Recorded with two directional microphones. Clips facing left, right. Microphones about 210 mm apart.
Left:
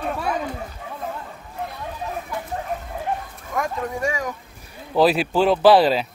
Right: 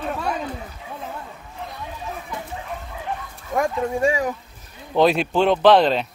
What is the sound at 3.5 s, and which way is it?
Speech, 30° right (ahead or behind).